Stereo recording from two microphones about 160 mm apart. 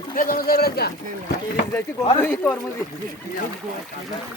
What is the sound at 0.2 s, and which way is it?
Speech, 65° left (ahead or behind).